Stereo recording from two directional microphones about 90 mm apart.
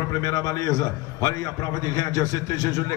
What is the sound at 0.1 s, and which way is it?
A man's voice, 40° left (ahead or behind).